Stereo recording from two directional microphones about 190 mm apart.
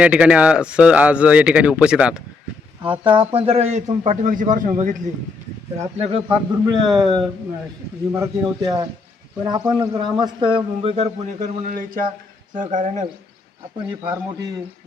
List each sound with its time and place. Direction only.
0.0 s speech: 5° right (ahead or behind)
2.8 s a man's voice: 25° right (ahead or behind); by 5.1 s 40° right (ahead or behind)
6.0 s a man's voice: 30° right (ahead or behind)
14.0 s a man's voice: 20° right (ahead or behind)